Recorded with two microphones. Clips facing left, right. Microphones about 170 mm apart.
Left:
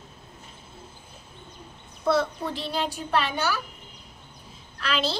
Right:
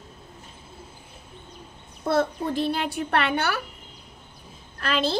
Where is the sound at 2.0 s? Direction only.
50° right (ahead or behind).